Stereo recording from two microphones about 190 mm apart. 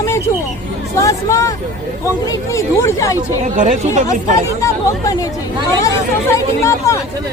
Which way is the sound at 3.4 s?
40° right (ahead or behind).